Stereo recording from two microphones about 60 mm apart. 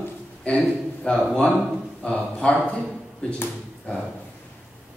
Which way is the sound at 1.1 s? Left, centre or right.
Centre.